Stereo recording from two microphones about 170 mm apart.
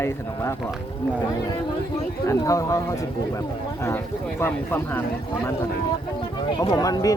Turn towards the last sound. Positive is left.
turn(degrees=20)  # may be behind; listen again after turning